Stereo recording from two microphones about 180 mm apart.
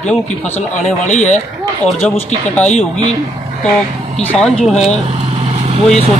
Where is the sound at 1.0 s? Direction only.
40° left (ahead or behind).